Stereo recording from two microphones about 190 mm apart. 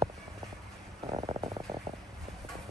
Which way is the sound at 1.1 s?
25° right (ahead or behind).